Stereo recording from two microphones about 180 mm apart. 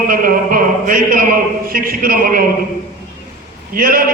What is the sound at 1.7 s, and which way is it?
Speech, 50° right (ahead or behind).